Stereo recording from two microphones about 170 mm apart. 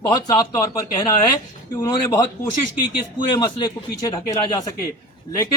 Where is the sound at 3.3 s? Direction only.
25° left (ahead or behind).